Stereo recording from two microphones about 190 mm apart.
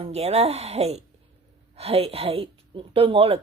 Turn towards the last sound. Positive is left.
turn(degrees=-30)  # may be behind; listen again after turning